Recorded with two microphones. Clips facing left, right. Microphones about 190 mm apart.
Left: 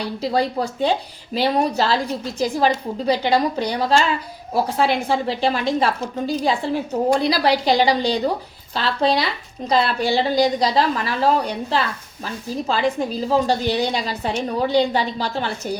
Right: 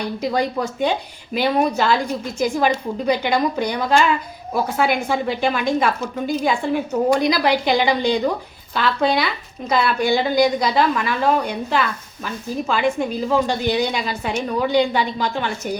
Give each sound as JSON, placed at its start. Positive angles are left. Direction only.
{"t": 0.0, "sound": "speech", "side_deg": 30}